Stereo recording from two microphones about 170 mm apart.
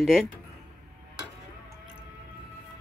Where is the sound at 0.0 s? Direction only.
Centre (ahead or behind).